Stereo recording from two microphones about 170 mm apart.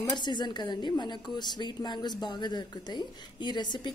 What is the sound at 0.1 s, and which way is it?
A woman's voice, 25° left (ahead or behind).